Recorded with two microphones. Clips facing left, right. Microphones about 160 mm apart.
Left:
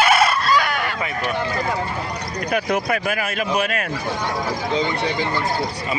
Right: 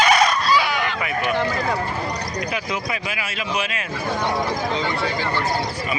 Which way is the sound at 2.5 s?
55° left (ahead or behind).